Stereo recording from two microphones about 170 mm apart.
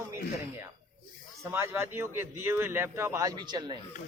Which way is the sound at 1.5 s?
15° right (ahead or behind).